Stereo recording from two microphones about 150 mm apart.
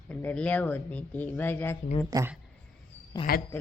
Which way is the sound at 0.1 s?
10° left (ahead or behind).